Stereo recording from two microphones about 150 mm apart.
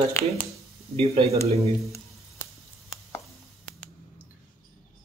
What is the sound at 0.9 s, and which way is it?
Speech, 40° right (ahead or behind).